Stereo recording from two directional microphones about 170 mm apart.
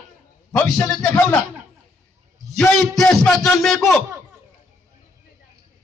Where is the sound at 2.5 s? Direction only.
5° left (ahead or behind).